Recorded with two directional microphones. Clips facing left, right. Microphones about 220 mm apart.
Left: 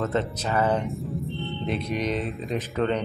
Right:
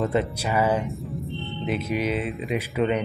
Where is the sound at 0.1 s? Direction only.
10° right (ahead or behind).